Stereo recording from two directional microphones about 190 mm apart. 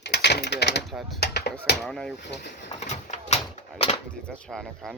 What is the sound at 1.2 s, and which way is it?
Chop, 60° left (ahead or behind).